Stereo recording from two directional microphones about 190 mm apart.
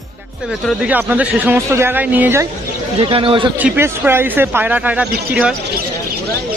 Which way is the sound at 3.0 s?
30° right (ahead or behind).